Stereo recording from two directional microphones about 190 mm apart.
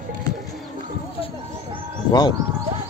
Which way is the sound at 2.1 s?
20° left (ahead or behind).